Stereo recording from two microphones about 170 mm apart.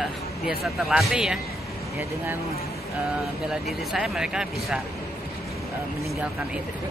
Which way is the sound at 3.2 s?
Centre (ahead or behind).